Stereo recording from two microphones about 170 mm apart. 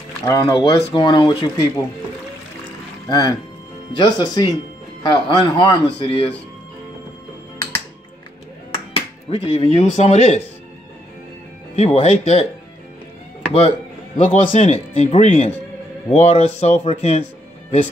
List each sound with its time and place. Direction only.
0.2 s a man's voice: 20° left (ahead or behind)
3.1 s a man's voice: 20° left (ahead or behind)
8.9 s speech: 35° left (ahead or behind)
11.7 s speech: 40° left (ahead or behind)
13.5 s speech: 35° left (ahead or behind)